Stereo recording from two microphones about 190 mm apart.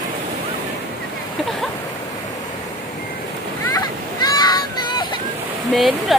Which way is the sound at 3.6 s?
20° left (ahead or behind).